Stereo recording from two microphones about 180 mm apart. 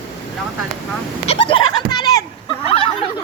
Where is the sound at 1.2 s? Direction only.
30° left (ahead or behind).